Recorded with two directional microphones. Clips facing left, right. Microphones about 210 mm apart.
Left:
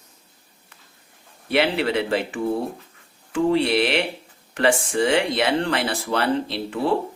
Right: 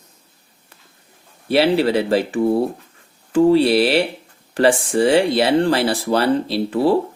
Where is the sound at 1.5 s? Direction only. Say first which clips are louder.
Right 5 dB; 35° right (ahead or behind).